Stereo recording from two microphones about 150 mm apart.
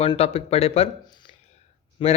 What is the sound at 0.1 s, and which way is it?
Speech, 40° left (ahead or behind).